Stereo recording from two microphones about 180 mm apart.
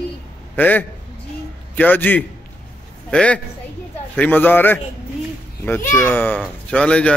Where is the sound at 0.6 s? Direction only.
10° left (ahead or behind).